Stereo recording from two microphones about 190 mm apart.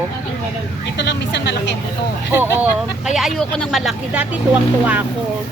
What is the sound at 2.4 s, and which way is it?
Speech, 5° right (ahead or behind).